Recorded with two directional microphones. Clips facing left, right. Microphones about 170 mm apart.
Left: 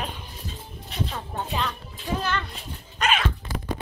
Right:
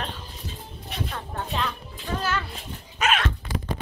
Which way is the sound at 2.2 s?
5° right (ahead or behind).